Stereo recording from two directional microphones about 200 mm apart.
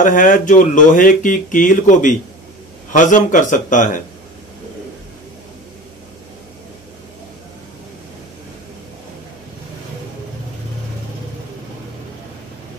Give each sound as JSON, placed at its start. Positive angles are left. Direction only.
{"t": 0.0, "sound": "speech", "side_deg": 40}